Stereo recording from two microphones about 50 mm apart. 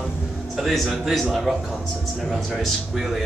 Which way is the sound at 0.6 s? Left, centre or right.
Centre.